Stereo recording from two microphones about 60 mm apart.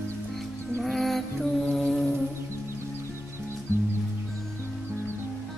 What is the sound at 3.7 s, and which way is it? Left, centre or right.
Music, left.